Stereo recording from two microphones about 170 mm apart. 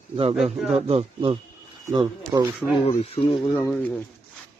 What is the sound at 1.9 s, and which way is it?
Speech, 25° right (ahead or behind).